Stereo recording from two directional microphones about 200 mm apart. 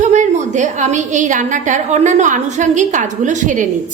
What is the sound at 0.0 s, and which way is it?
A woman's voice, 40° right (ahead or behind).